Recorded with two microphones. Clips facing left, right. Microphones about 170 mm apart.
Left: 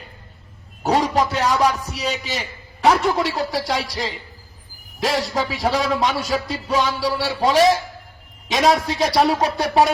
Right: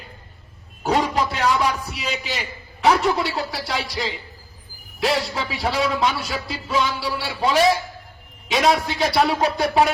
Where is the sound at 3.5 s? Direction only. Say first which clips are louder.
Left 4 dB; 40° left (ahead or behind).